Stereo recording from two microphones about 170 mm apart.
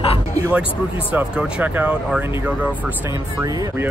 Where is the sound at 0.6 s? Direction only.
5° right (ahead or behind).